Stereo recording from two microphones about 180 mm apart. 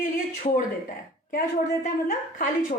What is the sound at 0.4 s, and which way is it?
A woman's voice, 50° left (ahead or behind).